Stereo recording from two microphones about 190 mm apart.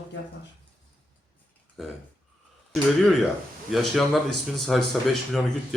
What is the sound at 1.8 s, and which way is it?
Speech, centre (ahead or behind).